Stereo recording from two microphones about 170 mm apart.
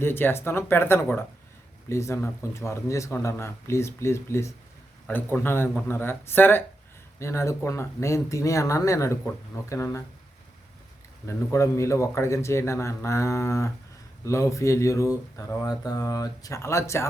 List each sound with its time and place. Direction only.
0.0 s speech: 15° left (ahead or behind)
11.3 s speech: 15° left (ahead or behind)